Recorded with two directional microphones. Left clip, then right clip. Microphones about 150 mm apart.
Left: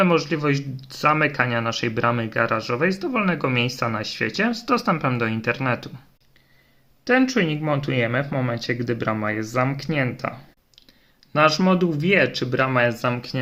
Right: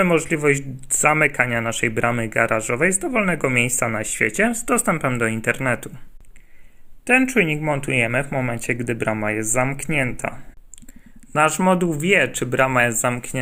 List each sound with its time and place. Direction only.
0.3 s speech: 15° right (ahead or behind)
7.2 s speech: 10° right (ahead or behind)
8.6 s speech: 25° right (ahead or behind)
11.3 s speech: 20° right (ahead or behind)